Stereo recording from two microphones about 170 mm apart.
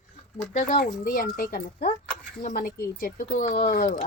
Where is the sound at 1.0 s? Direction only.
55° left (ahead or behind).